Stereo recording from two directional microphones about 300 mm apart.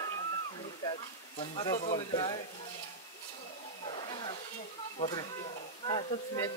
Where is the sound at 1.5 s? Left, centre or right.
Centre.